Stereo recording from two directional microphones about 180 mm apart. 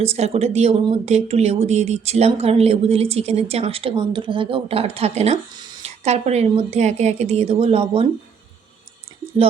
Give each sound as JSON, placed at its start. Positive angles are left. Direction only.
{"t": 0.0, "sound": "speech", "side_deg": -35}